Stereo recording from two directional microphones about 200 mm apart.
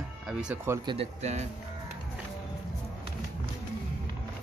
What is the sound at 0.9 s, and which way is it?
Speech, 30° right (ahead or behind).